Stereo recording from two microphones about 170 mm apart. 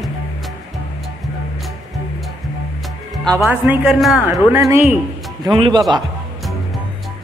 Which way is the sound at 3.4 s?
5° right (ahead or behind).